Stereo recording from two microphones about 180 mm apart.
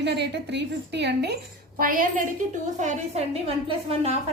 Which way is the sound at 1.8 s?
50° right (ahead or behind).